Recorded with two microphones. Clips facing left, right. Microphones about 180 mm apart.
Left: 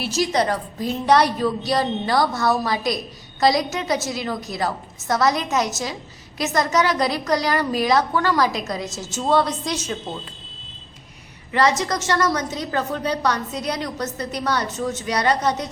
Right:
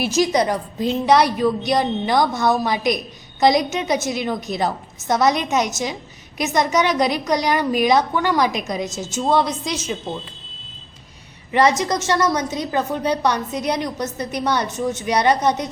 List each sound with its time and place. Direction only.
0.2 s a woman's voice: 15° right (ahead or behind)
11.8 s a woman's voice: 20° right (ahead or behind)